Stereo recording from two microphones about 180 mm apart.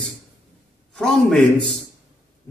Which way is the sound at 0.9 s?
Centre (ahead or behind).